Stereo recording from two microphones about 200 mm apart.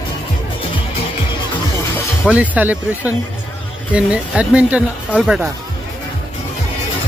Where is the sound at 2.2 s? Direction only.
5° right (ahead or behind).